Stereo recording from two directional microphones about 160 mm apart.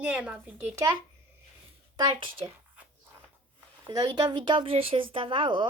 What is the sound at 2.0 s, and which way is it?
Speech, 30° right (ahead or behind).